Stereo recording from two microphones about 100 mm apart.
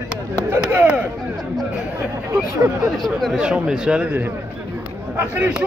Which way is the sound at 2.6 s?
30° right (ahead or behind).